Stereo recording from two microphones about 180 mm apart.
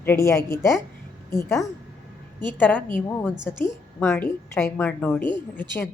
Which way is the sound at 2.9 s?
10° left (ahead or behind).